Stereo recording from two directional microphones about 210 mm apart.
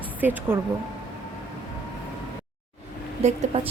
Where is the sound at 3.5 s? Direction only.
25° right (ahead or behind).